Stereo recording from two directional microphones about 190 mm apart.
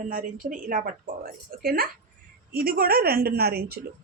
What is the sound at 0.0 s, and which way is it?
Speech, 45° right (ahead or behind).